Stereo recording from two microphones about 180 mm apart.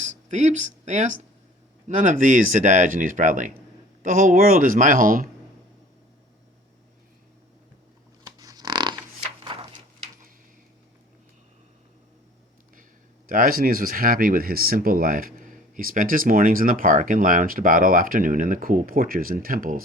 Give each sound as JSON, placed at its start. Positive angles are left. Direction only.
{"t": 0.0, "sound": "speech", "side_deg": -40}
{"t": 8.2, "sound": "a sound", "side_deg": -20}
{"t": 13.2, "sound": "speech", "side_deg": -50}